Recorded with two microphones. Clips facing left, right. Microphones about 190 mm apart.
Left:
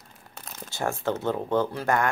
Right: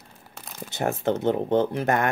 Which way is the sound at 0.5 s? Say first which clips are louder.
Right 3 dB; 20° right (ahead or behind).